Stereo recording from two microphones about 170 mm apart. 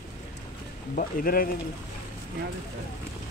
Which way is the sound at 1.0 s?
55° left (ahead or behind).